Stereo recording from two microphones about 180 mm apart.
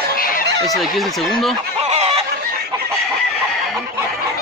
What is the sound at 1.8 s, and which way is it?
Chicken, 35° right (ahead or behind).